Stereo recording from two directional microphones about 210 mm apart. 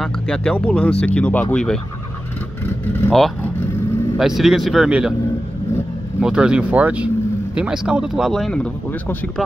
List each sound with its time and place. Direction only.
0.0 s speech: 5° left (ahead or behind)
6.2 s speech: 5° right (ahead or behind)